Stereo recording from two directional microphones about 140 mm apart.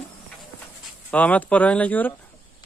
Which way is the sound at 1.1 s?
10° left (ahead or behind).